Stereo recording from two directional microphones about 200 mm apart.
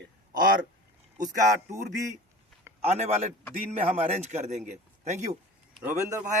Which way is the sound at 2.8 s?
30° right (ahead or behind).